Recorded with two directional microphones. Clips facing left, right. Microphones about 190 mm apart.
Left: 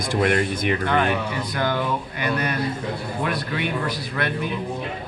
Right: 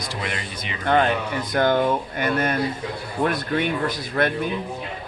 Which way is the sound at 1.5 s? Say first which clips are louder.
Right 6 dB; 50° right (ahead or behind).